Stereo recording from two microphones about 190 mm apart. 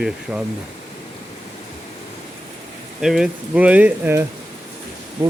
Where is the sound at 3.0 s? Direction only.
5° right (ahead or behind).